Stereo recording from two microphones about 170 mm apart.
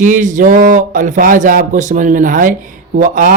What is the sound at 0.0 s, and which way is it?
A man's voice, 50° right (ahead or behind).